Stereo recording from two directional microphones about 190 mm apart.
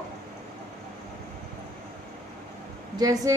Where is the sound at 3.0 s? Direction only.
20° right (ahead or behind).